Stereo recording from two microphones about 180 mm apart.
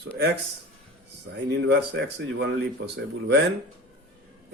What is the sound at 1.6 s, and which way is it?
Speech, 75° right (ahead or behind).